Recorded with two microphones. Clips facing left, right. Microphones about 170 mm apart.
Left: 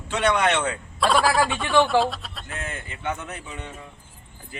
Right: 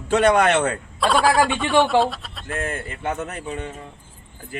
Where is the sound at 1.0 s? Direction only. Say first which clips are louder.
Right 2 dB; centre (ahead or behind).